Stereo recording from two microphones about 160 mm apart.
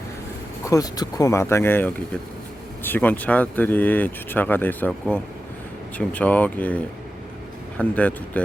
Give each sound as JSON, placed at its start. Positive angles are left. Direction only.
{"t": 0.6, "sound": "speech", "side_deg": 20}